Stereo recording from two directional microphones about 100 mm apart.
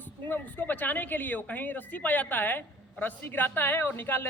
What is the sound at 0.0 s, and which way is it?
A woman's voice, 20° left (ahead or behind).